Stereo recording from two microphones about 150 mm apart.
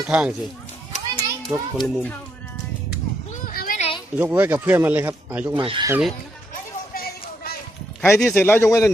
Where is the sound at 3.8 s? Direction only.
40° left (ahead or behind).